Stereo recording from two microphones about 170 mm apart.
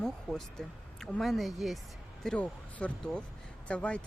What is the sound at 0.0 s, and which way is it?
Speech, 5° left (ahead or behind).